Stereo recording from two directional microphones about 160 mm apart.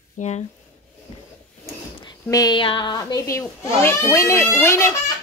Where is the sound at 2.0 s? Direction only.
25° left (ahead or behind).